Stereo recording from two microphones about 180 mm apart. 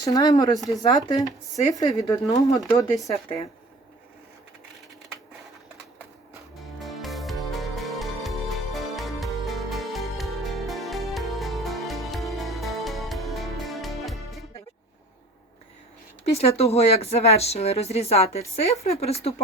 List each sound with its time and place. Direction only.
0.0 s speech: 20° left (ahead or behind)
6.8 s music: centre (ahead or behind)
16.2 s speech: 35° left (ahead or behind)